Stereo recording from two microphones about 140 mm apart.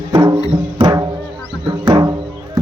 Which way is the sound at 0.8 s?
25° right (ahead or behind).